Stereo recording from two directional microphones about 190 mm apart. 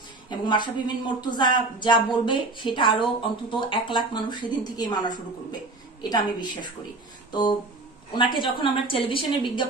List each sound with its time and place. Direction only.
0.3 s speech: 25° left (ahead or behind)
8.2 s speech: 25° left (ahead or behind)